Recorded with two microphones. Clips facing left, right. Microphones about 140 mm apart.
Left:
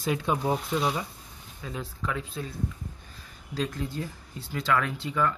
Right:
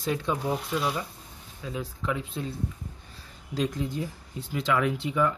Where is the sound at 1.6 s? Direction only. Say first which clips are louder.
Right 2 dB; 5° right (ahead or behind).